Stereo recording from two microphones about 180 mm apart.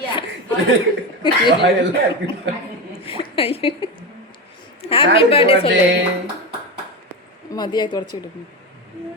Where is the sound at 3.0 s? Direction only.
30° left (ahead or behind).